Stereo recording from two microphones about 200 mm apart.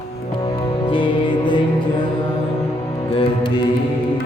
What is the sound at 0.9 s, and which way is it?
Music, 25° left (ahead or behind).